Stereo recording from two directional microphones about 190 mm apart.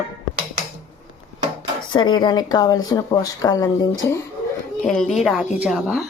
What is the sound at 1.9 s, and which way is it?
Speech, 25° left (ahead or behind).